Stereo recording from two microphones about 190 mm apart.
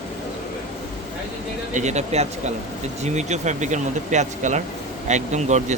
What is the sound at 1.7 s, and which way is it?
Speech, 40° right (ahead or behind).